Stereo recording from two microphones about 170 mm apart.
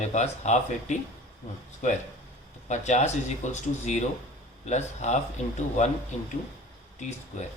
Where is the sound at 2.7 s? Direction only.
45° left (ahead or behind).